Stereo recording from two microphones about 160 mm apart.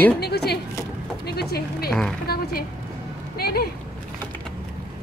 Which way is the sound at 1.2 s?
80° left.